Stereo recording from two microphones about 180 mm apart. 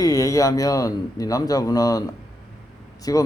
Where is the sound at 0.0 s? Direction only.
20° left (ahead or behind).